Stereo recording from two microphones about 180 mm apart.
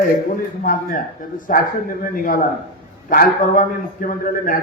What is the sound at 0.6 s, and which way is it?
A man's voice, 50° left (ahead or behind).